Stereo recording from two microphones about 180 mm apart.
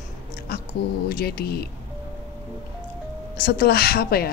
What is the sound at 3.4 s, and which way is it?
Speech, 60° left (ahead or behind).